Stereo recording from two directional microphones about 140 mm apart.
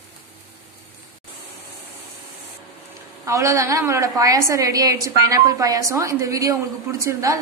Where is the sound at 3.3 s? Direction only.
20° right (ahead or behind).